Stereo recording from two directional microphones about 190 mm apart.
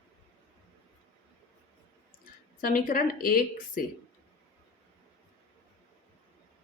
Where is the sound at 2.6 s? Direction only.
50° left (ahead or behind).